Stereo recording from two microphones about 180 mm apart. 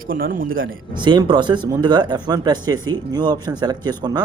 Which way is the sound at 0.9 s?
25° right (ahead or behind).